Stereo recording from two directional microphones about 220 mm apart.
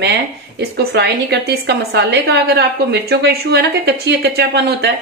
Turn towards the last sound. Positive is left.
turn(degrees=-50)  # may be behind; listen again after turning